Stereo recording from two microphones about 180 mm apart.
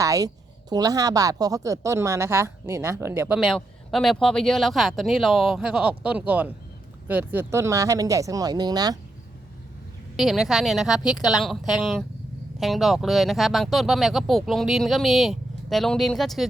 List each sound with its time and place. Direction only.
0.0 s a woman's voice: 20° right (ahead or behind)
10.2 s speech: centre (ahead or behind)